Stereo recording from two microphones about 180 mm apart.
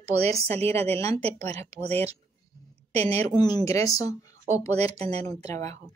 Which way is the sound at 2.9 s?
35° right (ahead or behind).